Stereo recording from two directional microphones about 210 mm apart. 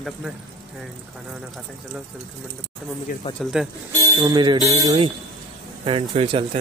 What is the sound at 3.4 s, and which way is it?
Speech, centre (ahead or behind).